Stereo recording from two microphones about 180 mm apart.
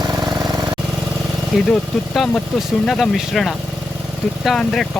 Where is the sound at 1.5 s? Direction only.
5° left (ahead or behind).